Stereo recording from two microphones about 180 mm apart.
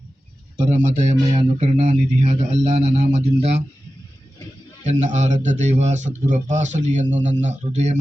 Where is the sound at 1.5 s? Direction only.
40° right (ahead or behind).